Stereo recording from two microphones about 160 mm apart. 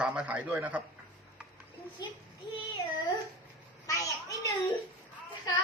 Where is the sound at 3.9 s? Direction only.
20° left (ahead or behind).